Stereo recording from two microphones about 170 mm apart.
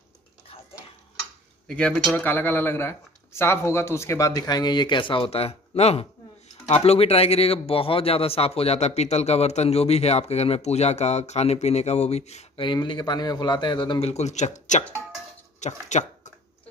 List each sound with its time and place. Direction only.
1.7 s a man's voice: centre (ahead or behind); by 12.6 s 40° left (ahead or behind)
12.6 s a man's voice: 25° left (ahead or behind); by 16.1 s 45° left (ahead or behind)